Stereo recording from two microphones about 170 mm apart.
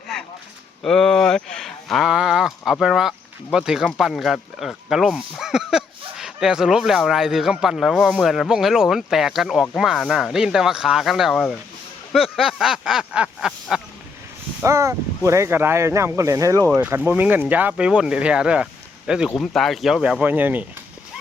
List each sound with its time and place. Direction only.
0.8 s speech: 5° left (ahead or behind)
14.6 s speech: 15° right (ahead or behind)